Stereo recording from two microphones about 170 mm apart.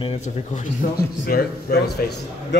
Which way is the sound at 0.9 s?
65° left (ahead or behind).